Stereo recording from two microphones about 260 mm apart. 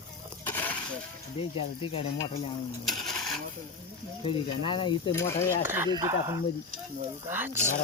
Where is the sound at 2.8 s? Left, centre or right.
Centre.